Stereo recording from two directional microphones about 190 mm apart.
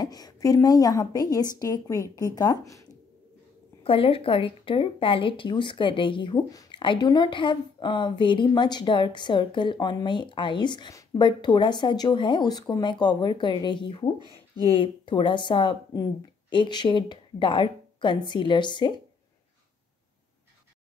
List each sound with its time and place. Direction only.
0.0 s speech: 20° left (ahead or behind)
3.8 s speech: 30° left (ahead or behind)